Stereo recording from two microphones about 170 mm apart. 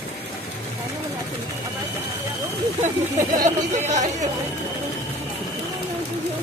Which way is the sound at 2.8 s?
45° right (ahead or behind).